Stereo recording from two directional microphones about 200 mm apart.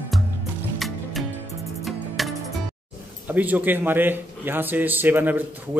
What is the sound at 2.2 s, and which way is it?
Music, centre (ahead or behind).